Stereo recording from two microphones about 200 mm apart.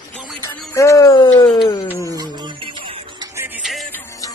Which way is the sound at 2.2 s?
20° right (ahead or behind).